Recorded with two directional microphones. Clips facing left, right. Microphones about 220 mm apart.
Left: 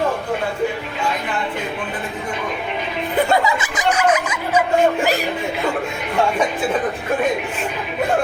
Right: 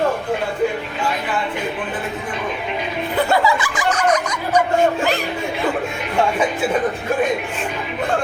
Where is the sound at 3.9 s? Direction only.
5° left (ahead or behind).